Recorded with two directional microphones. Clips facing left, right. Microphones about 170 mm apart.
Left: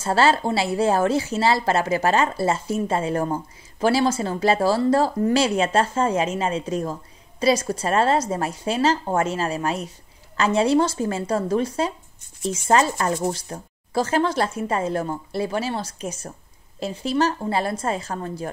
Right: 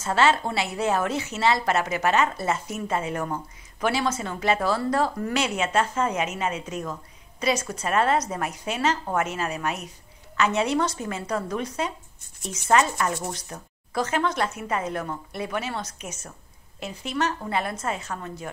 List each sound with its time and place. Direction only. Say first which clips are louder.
0.0 s speech: left 3 dB; 35° left (ahead or behind)